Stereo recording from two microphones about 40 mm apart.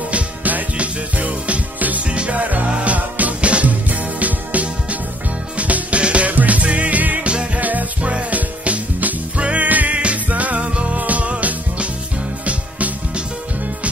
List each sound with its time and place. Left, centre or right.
0.1 s music: right
2.0 s music: right
7.2 s music: right
7.6 s music: right